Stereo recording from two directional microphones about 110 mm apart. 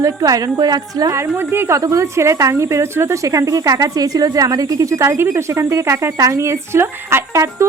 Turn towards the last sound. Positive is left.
turn(degrees=-25)  # may be behind; listen again after turning